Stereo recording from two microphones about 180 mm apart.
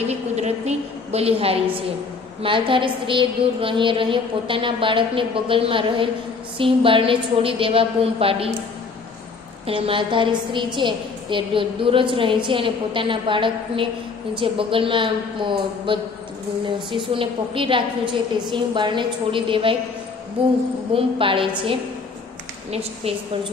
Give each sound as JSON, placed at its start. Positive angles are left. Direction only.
{"t": 0.4, "sound": "a sound", "side_deg": -35}
{"t": 2.4, "sound": "a woman's voice", "side_deg": -30}
{"t": 9.7, "sound": "a woman's voice", "side_deg": -30}